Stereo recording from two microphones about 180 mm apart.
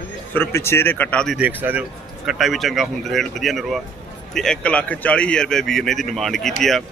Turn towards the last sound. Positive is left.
turn(degrees=0)  # may be behind; listen again after turning